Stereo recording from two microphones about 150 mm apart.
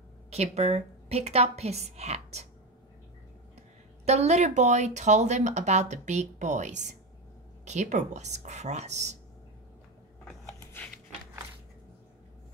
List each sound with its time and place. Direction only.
0.3 s speech: 45° right (ahead or behind)
4.0 s speech: 45° right (ahead or behind)